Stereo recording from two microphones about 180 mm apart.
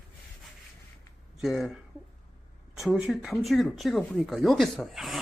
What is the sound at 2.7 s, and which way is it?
Speech, 5° right (ahead or behind).